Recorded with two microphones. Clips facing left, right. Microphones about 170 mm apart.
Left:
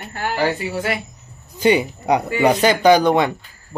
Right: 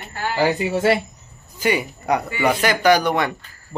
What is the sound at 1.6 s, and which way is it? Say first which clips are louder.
Speech: left 5 dB; 25° left (ahead or behind).